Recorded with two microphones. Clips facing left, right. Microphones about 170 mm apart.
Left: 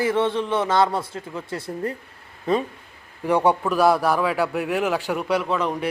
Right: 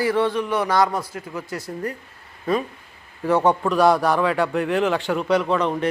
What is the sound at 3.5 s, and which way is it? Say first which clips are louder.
A man's voice: right 1 dB; 5° left (ahead or behind).